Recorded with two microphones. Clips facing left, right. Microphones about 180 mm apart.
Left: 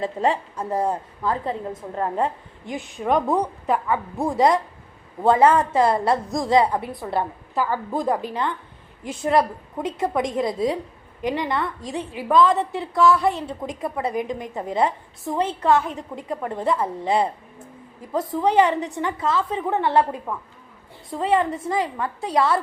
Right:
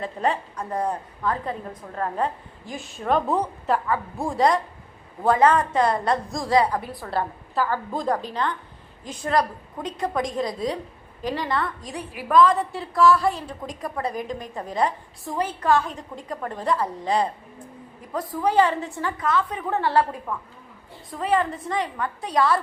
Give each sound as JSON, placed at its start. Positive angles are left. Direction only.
{"t": 0.0, "sound": "a woman's voice", "side_deg": 25}
{"t": 9.1, "sound": "a woman's voice", "side_deg": 25}